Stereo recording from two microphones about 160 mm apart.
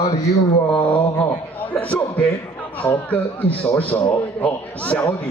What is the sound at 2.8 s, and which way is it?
A man's voice, 10° left (ahead or behind).